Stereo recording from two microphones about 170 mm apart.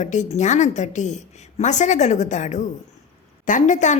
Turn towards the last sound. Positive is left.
turn(degrees=45)  # may be behind; listen again after turning